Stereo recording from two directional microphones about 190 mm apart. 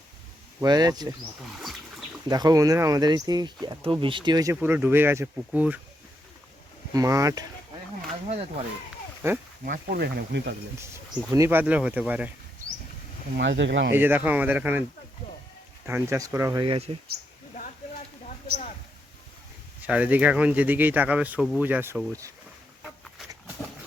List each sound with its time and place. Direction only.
0.6 s speech: 20° right (ahead or behind)
2.3 s speech: 20° right (ahead or behind)
6.9 s speech: 15° right (ahead or behind)
8.3 s speech: 35° right (ahead or behind)
9.2 s speech: 15° right (ahead or behind)
9.6 s speech: 50° right (ahead or behind)
10.8 s speech: 15° right (ahead or behind)
13.6 s speech: 75° right (ahead or behind)
13.9 s speech: 10° right (ahead or behind)
15.9 s speech: 15° right (ahead or behind); by 17.0 s 30° right (ahead or behind)
19.8 s speech: 10° right (ahead or behind)